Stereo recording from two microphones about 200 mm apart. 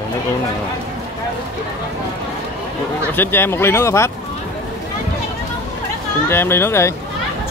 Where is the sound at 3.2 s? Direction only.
10° left (ahead or behind).